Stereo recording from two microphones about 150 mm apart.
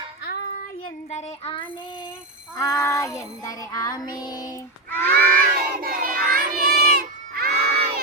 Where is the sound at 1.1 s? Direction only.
50° left (ahead or behind).